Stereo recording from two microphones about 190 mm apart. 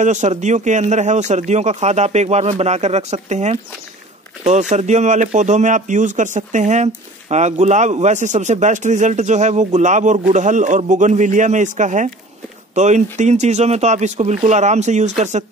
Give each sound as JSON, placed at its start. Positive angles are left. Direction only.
{"t": 0.0, "sound": "speech", "side_deg": -40}